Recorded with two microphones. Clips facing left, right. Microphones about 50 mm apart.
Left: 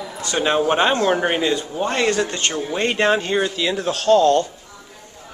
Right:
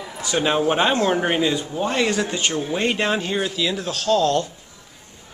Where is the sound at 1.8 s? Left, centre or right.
Centre.